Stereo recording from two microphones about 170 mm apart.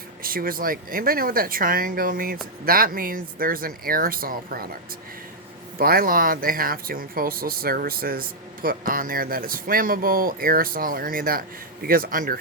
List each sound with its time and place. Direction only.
0.2 s speech: 60° right (ahead or behind)
5.7 s speech: 60° right (ahead or behind)